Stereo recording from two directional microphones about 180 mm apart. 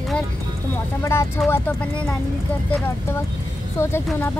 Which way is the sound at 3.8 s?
15° left (ahead or behind).